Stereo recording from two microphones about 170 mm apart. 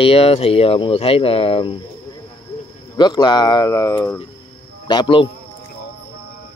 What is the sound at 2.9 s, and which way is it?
Speech, 25° left (ahead or behind).